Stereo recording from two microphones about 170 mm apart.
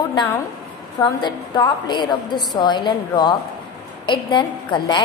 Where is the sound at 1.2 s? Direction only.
25° left (ahead or behind).